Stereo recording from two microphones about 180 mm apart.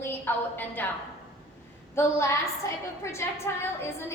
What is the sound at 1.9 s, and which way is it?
A woman's voice, 15° left (ahead or behind).